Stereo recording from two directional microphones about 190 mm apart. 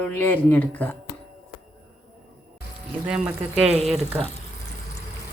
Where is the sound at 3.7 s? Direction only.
35° right (ahead or behind).